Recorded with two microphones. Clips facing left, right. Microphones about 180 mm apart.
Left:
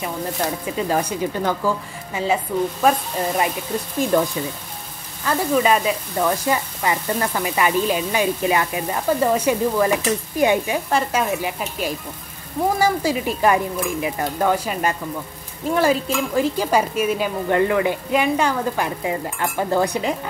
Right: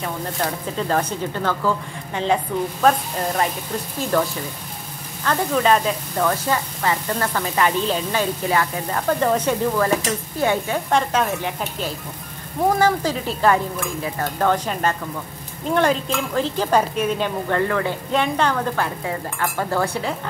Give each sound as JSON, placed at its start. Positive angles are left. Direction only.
{"t": 0.7, "sound": "speech", "side_deg": 10}
{"t": 4.1, "sound": "speech", "side_deg": 15}
{"t": 5.2, "sound": "speech", "side_deg": 5}